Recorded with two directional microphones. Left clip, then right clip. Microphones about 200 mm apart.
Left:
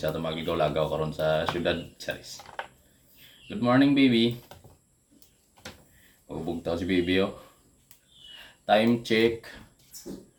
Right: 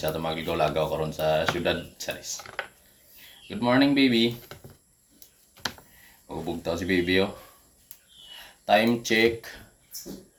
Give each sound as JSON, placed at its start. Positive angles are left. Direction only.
{"t": 0.0, "sound": "speech", "side_deg": 15}
{"t": 3.5, "sound": "speech", "side_deg": 15}
{"t": 6.5, "sound": "speech", "side_deg": 15}
{"t": 8.6, "sound": "speech", "side_deg": 15}
{"t": 9.1, "sound": "speech", "side_deg": -40}